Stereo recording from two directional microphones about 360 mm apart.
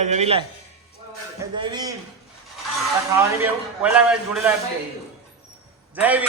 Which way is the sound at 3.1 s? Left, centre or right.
Centre.